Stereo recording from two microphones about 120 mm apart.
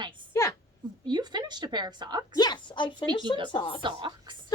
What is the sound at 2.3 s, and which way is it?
A woman's voice, 35° left (ahead or behind).